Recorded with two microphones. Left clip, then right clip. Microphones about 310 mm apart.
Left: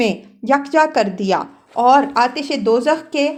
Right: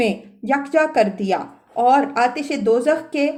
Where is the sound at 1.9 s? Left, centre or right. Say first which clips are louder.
Left 3 dB; centre.